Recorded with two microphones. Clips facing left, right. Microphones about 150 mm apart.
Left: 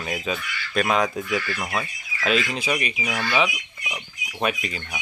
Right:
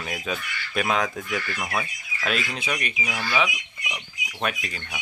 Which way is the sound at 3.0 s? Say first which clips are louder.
Left 3 dB; 25° left (ahead or behind).